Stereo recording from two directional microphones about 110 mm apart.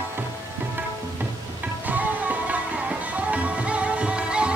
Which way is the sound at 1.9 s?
15° right (ahead or behind).